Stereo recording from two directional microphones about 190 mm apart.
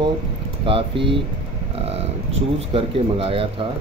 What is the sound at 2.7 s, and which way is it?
Speech, 30° right (ahead or behind).